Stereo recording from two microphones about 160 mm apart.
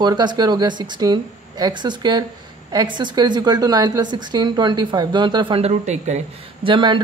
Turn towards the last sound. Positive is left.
turn(degrees=-30)  # may be behind; listen again after turning